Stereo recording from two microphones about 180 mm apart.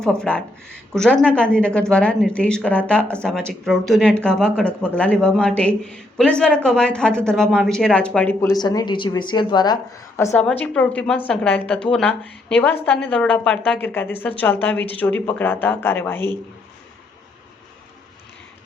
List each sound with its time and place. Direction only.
0.0 s a woman's voice: 5° left (ahead or behind)